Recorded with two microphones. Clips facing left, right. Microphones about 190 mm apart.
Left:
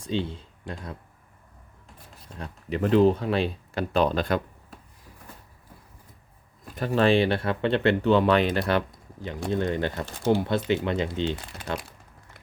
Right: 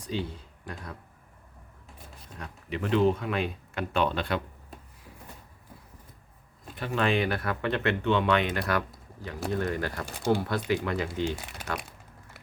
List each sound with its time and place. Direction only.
0.0 s speech: 25° left (ahead or behind)
2.4 s speech: 40° left (ahead or behind)
6.7 s speech: 40° left (ahead or behind); by 11.3 s 25° left (ahead or behind)